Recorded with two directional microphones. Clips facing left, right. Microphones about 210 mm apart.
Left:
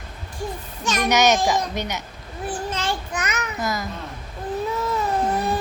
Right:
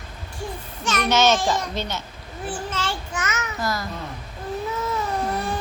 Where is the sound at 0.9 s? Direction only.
15° left (ahead or behind).